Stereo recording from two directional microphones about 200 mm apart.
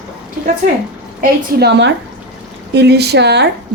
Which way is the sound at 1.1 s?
55° right (ahead or behind).